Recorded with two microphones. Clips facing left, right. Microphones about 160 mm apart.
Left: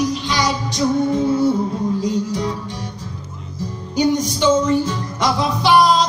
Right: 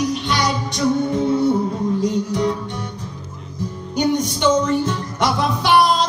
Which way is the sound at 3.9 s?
60° right (ahead or behind).